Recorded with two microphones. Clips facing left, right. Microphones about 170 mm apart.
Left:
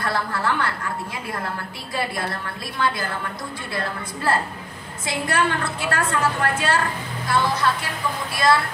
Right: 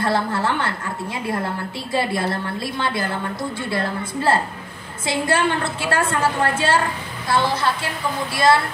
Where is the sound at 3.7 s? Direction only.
25° right (ahead or behind).